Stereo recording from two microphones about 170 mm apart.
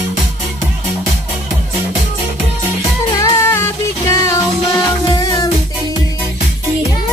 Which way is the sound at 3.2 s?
15° left (ahead or behind).